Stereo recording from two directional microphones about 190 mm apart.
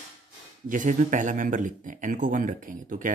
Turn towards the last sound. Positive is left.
turn(degrees=-45)  # may be behind; listen again after turning